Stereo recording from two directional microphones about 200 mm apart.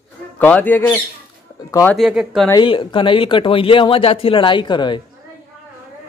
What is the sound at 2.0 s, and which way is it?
Speech, centre (ahead or behind).